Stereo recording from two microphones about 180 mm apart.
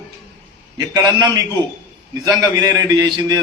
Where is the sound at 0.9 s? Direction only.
20° right (ahead or behind).